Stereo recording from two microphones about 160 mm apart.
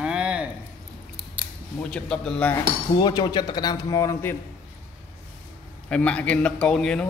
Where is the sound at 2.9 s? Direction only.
25° left (ahead or behind).